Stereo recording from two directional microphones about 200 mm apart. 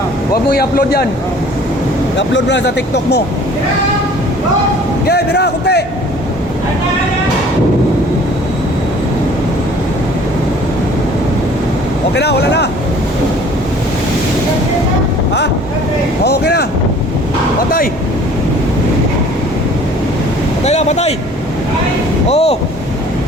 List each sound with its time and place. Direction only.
0.5 s a man's voice: 50° left (ahead or behind)
2.1 s speech: 60° left (ahead or behind)
5.0 s speech: 55° left (ahead or behind)
12.1 s speech: 55° left (ahead or behind)
16.2 s speech: 55° left (ahead or behind)
20.7 s speech: 35° left (ahead or behind)
22.3 s speech: 30° left (ahead or behind)